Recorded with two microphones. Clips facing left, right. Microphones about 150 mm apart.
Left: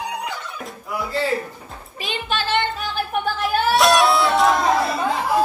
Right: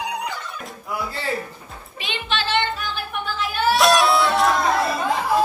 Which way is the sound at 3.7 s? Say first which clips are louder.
Left 1 dB; centre (ahead or behind).